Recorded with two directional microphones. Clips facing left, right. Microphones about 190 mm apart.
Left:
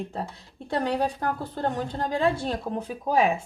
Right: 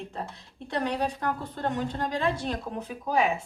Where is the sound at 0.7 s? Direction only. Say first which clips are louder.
Left 3 dB; 35° left (ahead or behind).